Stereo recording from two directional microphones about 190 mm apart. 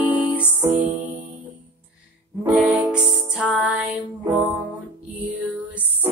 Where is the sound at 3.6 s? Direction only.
10° right (ahead or behind).